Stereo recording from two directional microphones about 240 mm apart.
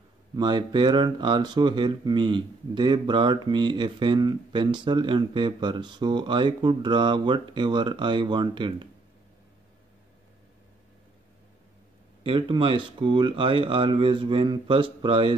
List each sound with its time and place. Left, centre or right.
0.4 s speech: centre
12.2 s speech: right